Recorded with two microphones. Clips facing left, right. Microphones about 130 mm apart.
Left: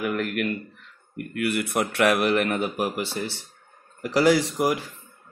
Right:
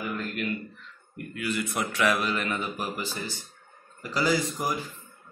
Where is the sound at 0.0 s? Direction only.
75° left (ahead or behind).